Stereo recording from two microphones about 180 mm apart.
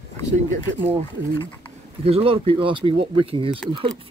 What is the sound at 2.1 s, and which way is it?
Speech, 30° right (ahead or behind).